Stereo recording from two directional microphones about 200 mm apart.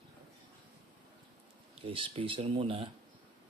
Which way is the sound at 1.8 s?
25° right (ahead or behind).